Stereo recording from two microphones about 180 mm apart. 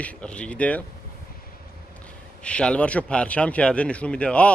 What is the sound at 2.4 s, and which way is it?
Speech, 5° left (ahead or behind).